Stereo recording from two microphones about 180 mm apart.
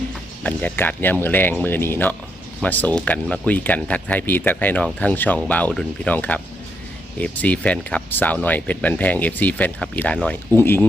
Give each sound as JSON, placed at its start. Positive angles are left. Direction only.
{"t": 0.4, "sound": "speech", "side_deg": 10}